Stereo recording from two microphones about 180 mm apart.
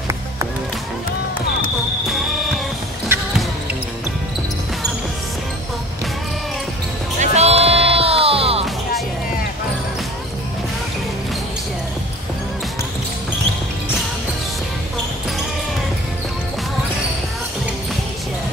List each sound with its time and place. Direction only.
2.0 s music: centre (ahead or behind)
7.2 s music: 35° right (ahead or behind)